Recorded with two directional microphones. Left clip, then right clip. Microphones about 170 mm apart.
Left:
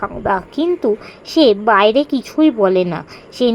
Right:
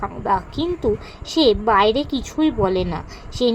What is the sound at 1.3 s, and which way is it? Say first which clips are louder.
A woman's voice: left 4 dB; 50° left (ahead or behind).